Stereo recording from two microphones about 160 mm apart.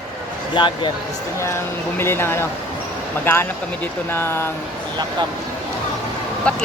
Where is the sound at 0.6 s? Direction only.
30° left (ahead or behind).